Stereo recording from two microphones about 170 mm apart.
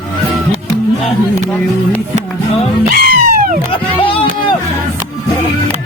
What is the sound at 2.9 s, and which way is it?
Music, 60° right (ahead or behind).